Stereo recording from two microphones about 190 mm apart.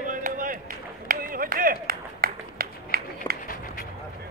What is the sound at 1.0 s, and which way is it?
Run, 50° right (ahead or behind).